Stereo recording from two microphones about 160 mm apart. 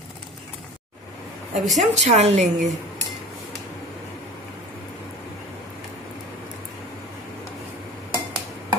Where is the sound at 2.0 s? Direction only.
40° right (ahead or behind).